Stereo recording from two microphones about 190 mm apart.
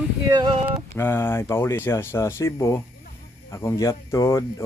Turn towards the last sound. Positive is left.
turn(degrees=15)  # may be behind; listen again after turning